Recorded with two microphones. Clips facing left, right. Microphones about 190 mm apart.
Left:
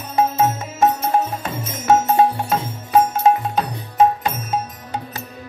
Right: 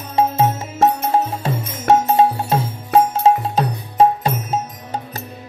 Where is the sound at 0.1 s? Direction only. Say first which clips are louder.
Right 1 dB; 25° right (ahead or behind).